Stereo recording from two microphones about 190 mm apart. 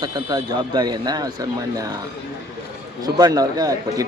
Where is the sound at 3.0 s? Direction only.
20° right (ahead or behind).